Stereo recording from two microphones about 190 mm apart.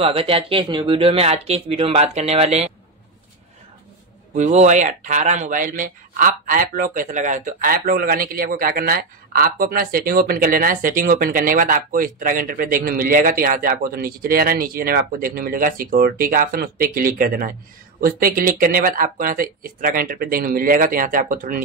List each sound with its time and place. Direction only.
0.0 s speech: 30° right (ahead or behind)
4.4 s speech: 35° right (ahead or behind)